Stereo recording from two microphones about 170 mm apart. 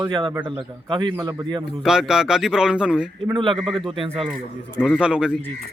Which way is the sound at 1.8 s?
5° right (ahead or behind).